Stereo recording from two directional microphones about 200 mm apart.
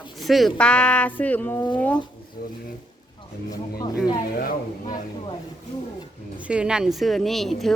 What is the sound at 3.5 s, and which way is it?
Speech, 20° left (ahead or behind).